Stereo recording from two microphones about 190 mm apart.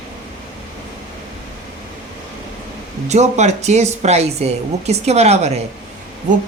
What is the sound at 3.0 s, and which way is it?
Speech, 35° right (ahead or behind).